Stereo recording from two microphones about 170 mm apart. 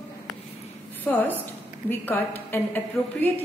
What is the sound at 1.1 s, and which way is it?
A woman's voice, 5° left (ahead or behind).